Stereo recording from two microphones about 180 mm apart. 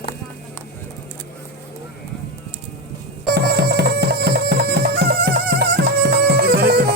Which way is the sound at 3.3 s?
65° right (ahead or behind).